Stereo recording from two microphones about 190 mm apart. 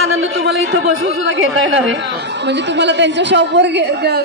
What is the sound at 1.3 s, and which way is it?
A woman's voice, 75° right (ahead or behind).